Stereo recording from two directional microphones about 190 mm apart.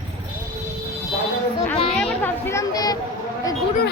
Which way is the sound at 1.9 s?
10° left (ahead or behind).